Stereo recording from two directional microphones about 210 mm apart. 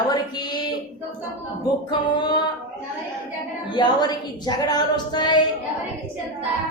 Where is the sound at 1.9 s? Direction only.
20° left (ahead or behind).